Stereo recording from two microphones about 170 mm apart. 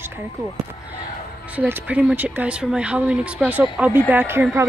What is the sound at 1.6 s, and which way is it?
A woman's voice, 10° right (ahead or behind).